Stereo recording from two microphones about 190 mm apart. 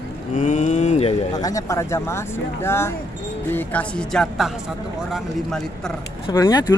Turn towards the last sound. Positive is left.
turn(degrees=20)  # may be behind; listen again after turning